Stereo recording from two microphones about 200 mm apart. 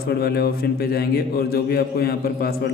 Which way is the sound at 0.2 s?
50° left (ahead or behind).